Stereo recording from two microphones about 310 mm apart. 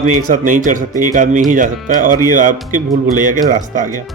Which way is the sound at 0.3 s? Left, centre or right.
Right.